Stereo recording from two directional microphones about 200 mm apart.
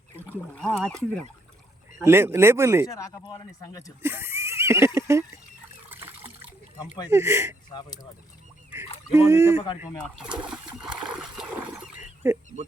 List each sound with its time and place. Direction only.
0.5 s speech: 5° left (ahead or behind)
2.0 s speech: 10° right (ahead or behind)
2.8 s speech: 15° left (ahead or behind)
4.0 s neigh: 10° right (ahead or behind)
5.9 s water: 10° right (ahead or behind)
6.7 s speech: 20° left (ahead or behind)
7.1 s speech: 15° right (ahead or behind)
7.7 s speech: 20° left (ahead or behind)
9.1 s speech: 10° right (ahead or behind)
10.9 s dog: 5° right (ahead or behind)
12.2 s speech: 15° right (ahead or behind)